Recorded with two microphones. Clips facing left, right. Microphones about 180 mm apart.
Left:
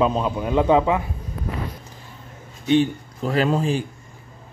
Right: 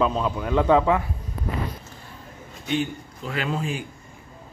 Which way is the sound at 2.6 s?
35° left (ahead or behind).